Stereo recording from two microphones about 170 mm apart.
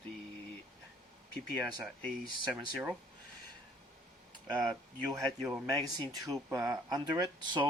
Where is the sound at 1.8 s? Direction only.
10° left (ahead or behind).